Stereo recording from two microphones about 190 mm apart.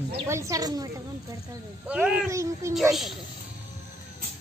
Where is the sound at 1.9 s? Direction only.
5° right (ahead or behind).